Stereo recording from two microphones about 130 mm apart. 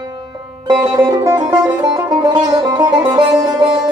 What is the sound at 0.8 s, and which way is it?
Music, 25° right (ahead or behind).